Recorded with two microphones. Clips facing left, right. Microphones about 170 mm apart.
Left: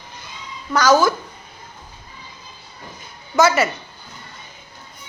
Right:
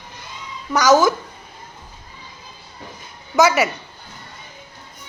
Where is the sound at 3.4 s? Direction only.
15° right (ahead or behind).